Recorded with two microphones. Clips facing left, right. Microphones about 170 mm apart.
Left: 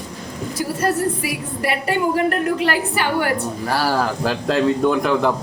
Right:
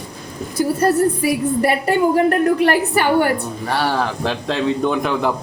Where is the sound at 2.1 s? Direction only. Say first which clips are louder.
Right 4 dB; 50° right (ahead or behind).